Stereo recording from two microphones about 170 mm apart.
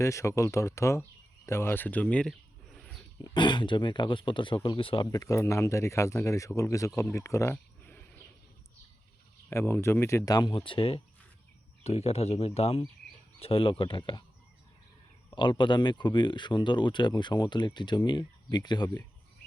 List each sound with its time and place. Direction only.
0.0 s speech: 15° left (ahead or behind)
2.7 s wild animals: centre (ahead or behind)
3.2 s speech: 25° left (ahead or behind)
5.1 s speech: 20° left (ahead or behind)
9.5 s speech: 15° left (ahead or behind)
15.4 s speech: 30° left (ahead or behind)